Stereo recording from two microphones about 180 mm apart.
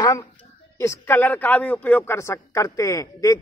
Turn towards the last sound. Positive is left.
turn(degrees=20)  # may be behind; listen again after turning